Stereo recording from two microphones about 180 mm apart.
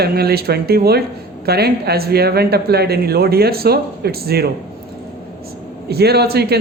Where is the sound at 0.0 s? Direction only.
60° right (ahead or behind).